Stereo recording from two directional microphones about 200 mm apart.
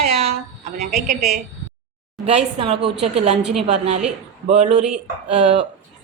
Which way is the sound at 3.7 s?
35° right (ahead or behind).